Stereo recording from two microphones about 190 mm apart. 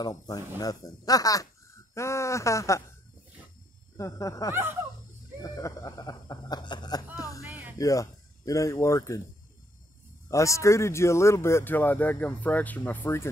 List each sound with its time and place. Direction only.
0.0 s speech: 20° left (ahead or behind)
3.9 s speech: 15° left (ahead or behind)
5.4 s chicken: 20° left (ahead or behind)
7.2 s music: 20° left (ahead or behind)
7.4 s music: 10° right (ahead or behind)
7.7 s speech: 15° left (ahead or behind)
10.2 s speech: 15° left (ahead or behind)